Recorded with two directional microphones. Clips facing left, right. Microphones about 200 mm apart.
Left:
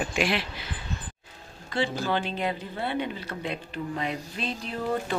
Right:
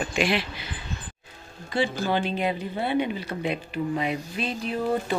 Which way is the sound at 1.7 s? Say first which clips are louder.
Right 2 dB; 10° right (ahead or behind).